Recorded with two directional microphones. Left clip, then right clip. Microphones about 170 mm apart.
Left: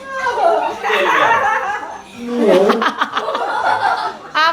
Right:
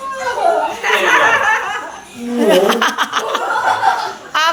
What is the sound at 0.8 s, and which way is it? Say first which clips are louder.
Chuckle: right 1 dB; 30° left (ahead or behind).